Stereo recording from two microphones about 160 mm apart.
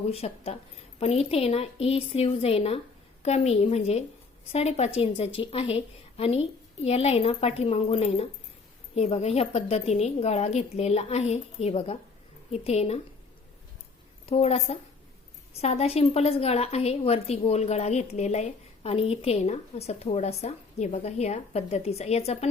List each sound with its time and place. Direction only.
0.1 s a woman's voice: 40° left (ahead or behind)
14.3 s a woman's voice: 40° left (ahead or behind)